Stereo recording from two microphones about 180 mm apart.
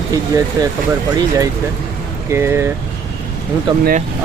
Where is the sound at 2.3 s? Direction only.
15° right (ahead or behind).